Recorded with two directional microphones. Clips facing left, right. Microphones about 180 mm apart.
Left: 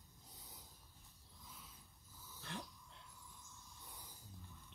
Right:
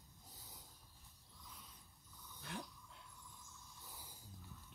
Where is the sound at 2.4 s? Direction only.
5° right (ahead or behind).